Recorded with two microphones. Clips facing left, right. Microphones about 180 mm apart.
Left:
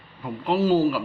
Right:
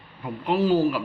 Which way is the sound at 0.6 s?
40° left (ahead or behind).